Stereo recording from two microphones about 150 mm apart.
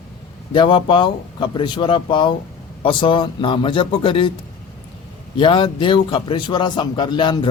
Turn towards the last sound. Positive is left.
turn(degrees=35)  # may be behind; listen again after turning